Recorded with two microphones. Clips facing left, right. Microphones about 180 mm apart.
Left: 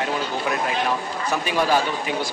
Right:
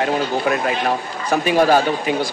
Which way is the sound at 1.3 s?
50° right (ahead or behind).